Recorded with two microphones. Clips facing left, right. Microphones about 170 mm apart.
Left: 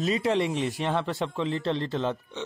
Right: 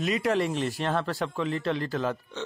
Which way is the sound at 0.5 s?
5° left (ahead or behind).